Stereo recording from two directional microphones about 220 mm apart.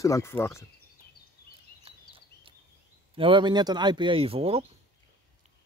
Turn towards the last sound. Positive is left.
turn(degrees=-25)  # may be behind; listen again after turning